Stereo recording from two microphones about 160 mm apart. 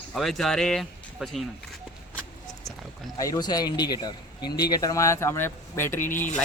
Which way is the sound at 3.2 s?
20° left (ahead or behind).